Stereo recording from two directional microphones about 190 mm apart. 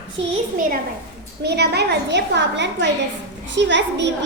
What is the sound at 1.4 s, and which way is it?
A woman's voice, 60° right (ahead or behind).